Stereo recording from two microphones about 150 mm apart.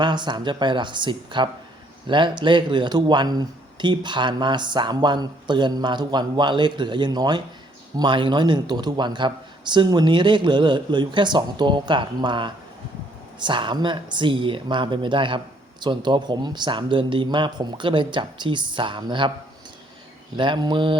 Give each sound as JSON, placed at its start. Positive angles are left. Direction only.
{"t": 0.0, "sound": "speech", "side_deg": -30}
{"t": 20.3, "sound": "speech", "side_deg": -30}